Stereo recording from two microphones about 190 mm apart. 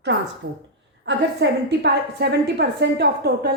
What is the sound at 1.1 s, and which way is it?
A woman's voice, 65° right (ahead or behind).